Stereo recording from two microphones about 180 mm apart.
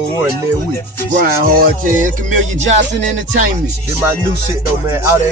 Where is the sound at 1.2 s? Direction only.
55° right (ahead or behind).